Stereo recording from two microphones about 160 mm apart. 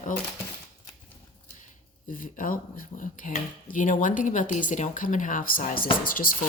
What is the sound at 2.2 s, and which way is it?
Speech, 60° left (ahead or behind).